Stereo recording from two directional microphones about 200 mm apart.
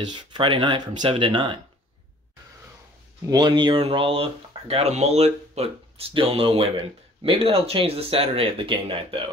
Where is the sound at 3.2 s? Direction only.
20° right (ahead or behind).